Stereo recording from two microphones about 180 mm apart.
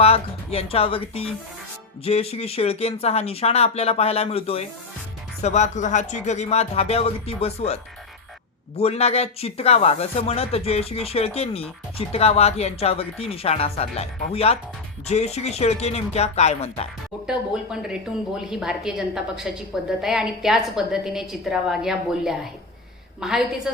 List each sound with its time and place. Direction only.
0.0 s speech: 35° left (ahead or behind)
8.8 s speech: 35° left (ahead or behind)
17.2 s a woman's voice: 5° right (ahead or behind)